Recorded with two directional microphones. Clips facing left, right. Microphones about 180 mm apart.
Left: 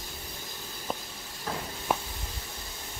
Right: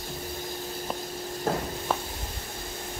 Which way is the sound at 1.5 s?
45° right (ahead or behind).